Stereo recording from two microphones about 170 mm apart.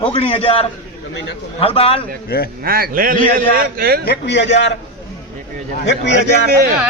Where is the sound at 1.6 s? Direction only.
35° left (ahead or behind).